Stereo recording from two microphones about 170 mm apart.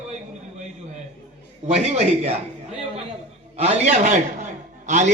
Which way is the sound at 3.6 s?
40° right (ahead or behind).